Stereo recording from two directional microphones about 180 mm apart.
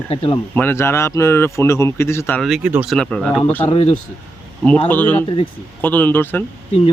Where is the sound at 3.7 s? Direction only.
35° left (ahead or behind).